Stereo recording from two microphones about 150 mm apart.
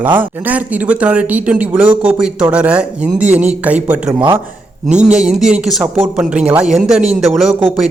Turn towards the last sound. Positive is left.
turn(degrees=-5)  # may be behind; listen again after turning